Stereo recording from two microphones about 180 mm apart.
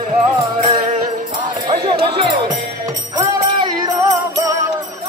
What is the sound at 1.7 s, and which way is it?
Music, 25° right (ahead or behind).